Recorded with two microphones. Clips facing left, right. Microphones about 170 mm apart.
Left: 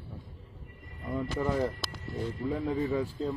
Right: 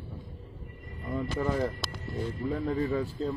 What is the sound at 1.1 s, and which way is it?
Speech, 10° left (ahead or behind).